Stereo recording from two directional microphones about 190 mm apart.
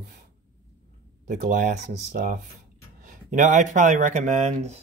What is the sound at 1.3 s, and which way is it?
Speech, 45° right (ahead or behind).